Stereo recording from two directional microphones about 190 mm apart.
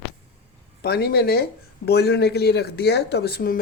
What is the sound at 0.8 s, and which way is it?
Speech, 55° left (ahead or behind).